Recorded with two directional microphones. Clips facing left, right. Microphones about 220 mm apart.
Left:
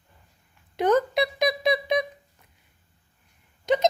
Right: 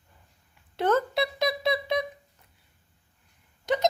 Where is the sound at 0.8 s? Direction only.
15° left (ahead or behind).